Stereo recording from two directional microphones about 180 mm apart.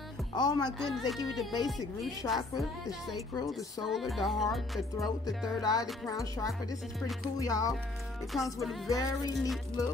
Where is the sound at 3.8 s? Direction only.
Centre (ahead or behind).